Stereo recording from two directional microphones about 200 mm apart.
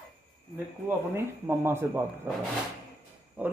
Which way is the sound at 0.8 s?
10° right (ahead or behind).